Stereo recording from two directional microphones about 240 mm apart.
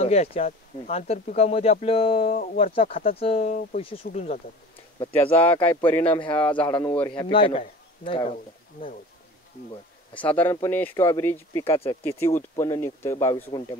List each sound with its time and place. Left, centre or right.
0.0 s speech: left
5.1 s speech: centre
6.6 s speech: left
10.2 s speech: centre